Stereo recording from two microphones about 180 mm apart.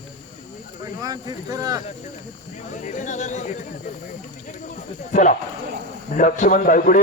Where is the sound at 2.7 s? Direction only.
45° left (ahead or behind).